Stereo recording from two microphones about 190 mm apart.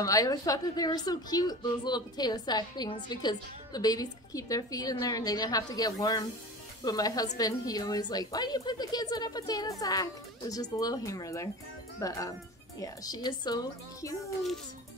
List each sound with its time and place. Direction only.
0.0 s a woman's voice: 20° left (ahead or behind)